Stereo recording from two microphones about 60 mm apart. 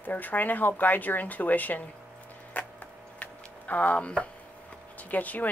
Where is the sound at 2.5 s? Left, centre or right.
Left.